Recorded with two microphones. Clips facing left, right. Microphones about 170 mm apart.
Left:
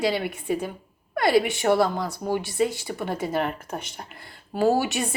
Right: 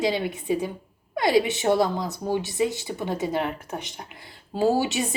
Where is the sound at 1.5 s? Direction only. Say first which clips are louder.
Even; 20° right (ahead or behind).